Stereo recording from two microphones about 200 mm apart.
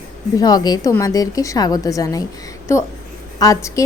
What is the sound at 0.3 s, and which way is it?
A woman's voice, 20° left (ahead or behind).